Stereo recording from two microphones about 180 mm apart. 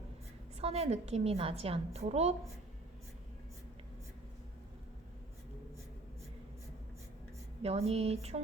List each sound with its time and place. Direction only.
0.6 s a woman's voice: 35° right (ahead or behind)
7.6 s a woman's voice: 35° right (ahead or behind)